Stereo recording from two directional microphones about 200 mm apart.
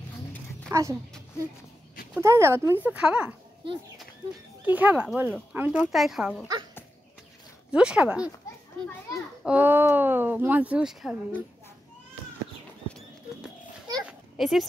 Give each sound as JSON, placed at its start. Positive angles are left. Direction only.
{"t": 0.7, "sound": "speech", "side_deg": -15}
{"t": 2.1, "sound": "speech", "side_deg": -15}
{"t": 4.6, "sound": "speech", "side_deg": -10}
{"t": 7.7, "sound": "speech", "side_deg": -5}
{"t": 9.4, "sound": "speech", "side_deg": -5}
{"t": 14.0, "sound": "a sound", "side_deg": -5}